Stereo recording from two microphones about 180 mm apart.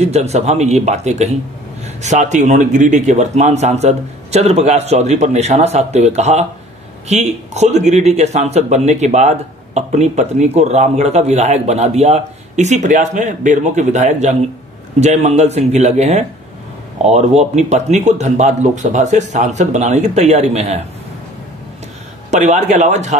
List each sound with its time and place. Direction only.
0.0 s speech: 35° right (ahead or behind)
22.3 s speech: 40° right (ahead or behind)